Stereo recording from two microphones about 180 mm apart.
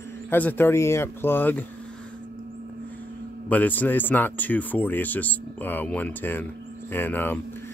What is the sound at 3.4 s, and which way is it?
Speech, 10° left (ahead or behind).